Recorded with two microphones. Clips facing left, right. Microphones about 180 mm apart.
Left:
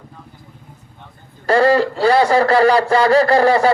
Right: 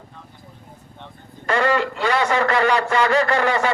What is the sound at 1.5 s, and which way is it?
Speech, 35° left (ahead or behind).